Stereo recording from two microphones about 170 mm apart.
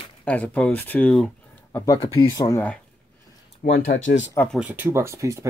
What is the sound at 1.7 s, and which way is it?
Speech, 20° left (ahead or behind).